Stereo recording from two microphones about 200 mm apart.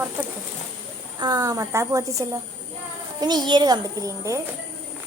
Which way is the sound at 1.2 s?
20° right (ahead or behind).